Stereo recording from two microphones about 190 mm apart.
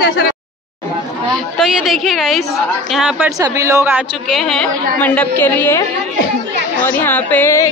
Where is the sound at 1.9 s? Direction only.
Centre (ahead or behind).